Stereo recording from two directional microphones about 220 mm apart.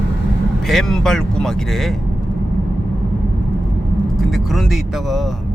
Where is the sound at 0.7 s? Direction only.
Centre (ahead or behind).